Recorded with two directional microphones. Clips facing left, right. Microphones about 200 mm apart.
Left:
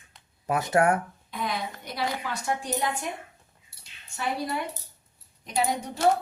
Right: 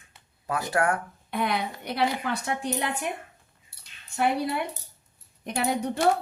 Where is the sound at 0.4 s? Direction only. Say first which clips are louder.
Left 3 dB; 20° left (ahead or behind).